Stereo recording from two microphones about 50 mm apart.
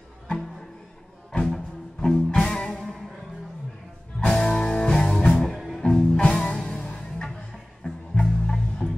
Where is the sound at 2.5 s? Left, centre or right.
Centre.